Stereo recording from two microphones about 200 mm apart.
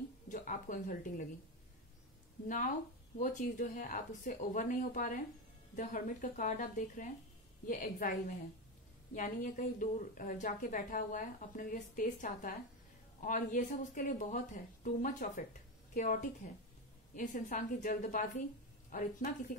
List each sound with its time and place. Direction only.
0.3 s a sound: 40° left (ahead or behind)
2.4 s a woman's voice: 40° left (ahead or behind)
9.1 s a woman's voice: 40° left (ahead or behind)